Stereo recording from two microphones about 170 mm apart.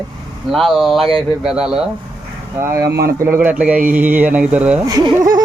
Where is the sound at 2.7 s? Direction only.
15° right (ahead or behind).